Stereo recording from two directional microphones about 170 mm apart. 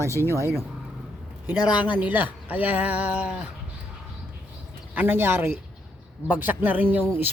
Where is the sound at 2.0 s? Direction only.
10° right (ahead or behind).